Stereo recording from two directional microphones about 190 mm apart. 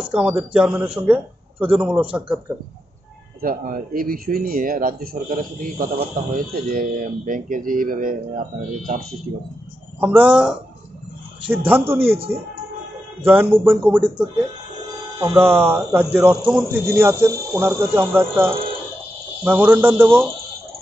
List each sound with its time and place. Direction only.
0.1 s a man's voice: 5° right (ahead or behind)
3.3 s speech: 50° right (ahead or behind)
9.9 s a man's voice: 10° right (ahead or behind)
12.0 s speech: 30° right (ahead or behind)
13.2 s a man's voice: 10° right (ahead or behind)
15.1 s a man's voice: 15° right (ahead or behind)